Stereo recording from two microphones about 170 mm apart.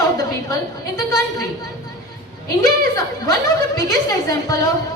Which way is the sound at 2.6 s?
20° left (ahead or behind).